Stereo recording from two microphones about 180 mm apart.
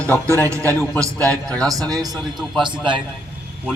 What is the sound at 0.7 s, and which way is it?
A man's voice, 5° left (ahead or behind).